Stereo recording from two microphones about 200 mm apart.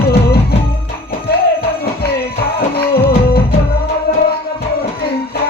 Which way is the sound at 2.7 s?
50° left (ahead or behind).